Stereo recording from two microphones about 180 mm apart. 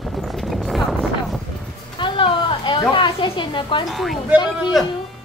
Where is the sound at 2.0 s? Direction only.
30° left (ahead or behind).